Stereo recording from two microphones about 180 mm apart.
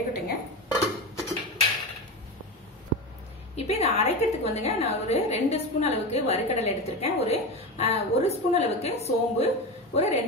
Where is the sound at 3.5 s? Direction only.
35° left (ahead or behind).